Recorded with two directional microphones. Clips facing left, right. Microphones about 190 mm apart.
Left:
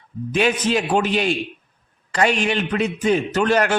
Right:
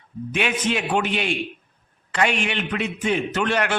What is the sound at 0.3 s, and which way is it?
A man's voice, 35° left (ahead or behind).